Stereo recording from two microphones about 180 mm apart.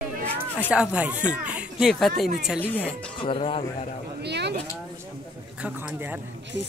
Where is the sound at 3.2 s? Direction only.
30° left (ahead or behind).